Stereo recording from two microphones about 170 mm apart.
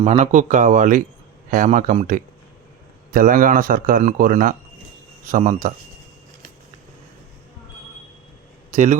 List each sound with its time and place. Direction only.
0.0 s a man's voice: 40° right (ahead or behind)
8.7 s a man's voice: 45° right (ahead or behind)